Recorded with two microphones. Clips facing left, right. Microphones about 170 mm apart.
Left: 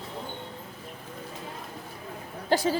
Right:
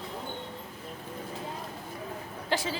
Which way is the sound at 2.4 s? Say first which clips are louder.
Left 7 dB; 40° left (ahead or behind).